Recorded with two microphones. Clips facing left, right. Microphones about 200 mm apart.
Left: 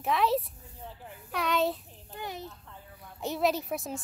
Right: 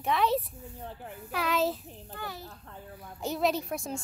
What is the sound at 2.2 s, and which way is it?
Speech, 20° left (ahead or behind).